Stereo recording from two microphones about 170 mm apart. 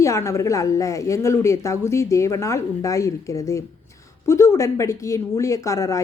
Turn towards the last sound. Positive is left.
turn(degrees=20)  # may be behind; listen again after turning